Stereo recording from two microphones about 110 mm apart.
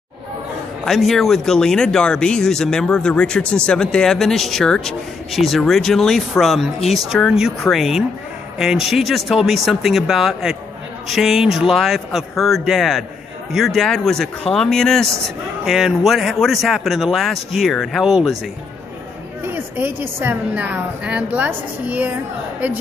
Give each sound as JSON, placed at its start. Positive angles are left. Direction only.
{"t": 0.8, "sound": "speech", "side_deg": 0}
{"t": 19.4, "sound": "a woman's voice", "side_deg": -20}